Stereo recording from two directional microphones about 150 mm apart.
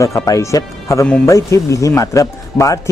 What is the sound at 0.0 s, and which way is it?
Speech, 20° left (ahead or behind).